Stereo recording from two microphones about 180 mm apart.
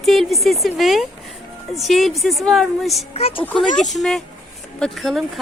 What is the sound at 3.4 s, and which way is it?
Speech, 10° left (ahead or behind).